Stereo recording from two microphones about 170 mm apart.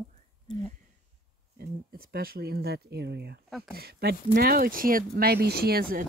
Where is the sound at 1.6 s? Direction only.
60° right (ahead or behind).